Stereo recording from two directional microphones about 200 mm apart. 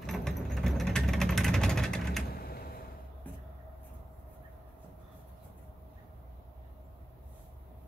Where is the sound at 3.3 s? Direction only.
10° left (ahead or behind).